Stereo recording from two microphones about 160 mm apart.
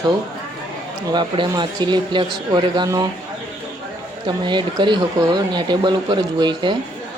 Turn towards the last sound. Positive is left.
turn(degrees=-30)  # may be behind; listen again after turning